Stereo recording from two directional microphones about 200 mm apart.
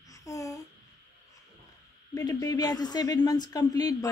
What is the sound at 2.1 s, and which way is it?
Speech, 15° left (ahead or behind).